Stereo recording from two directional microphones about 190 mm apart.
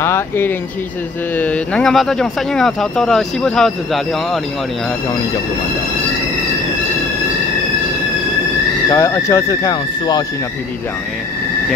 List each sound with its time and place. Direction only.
0.0 s speech: 15° left (ahead or behind)
8.9 s speech: 15° left (ahead or behind)